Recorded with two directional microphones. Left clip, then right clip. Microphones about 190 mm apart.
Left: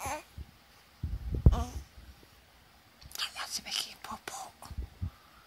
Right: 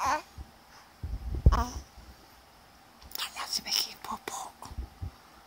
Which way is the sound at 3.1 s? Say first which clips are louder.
Right 2 dB; 15° left (ahead or behind).